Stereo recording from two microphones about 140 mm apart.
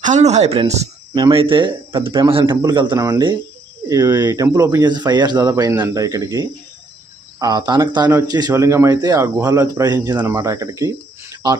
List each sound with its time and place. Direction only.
0.0 s speech: 55° right (ahead or behind)
1.1 s speech: 35° right (ahead or behind)
3.0 s speech: 20° right (ahead or behind)